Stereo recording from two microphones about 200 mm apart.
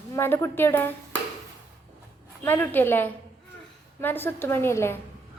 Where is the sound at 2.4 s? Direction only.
10° left (ahead or behind).